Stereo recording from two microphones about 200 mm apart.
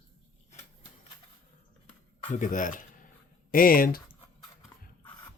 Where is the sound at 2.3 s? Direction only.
40° left (ahead or behind).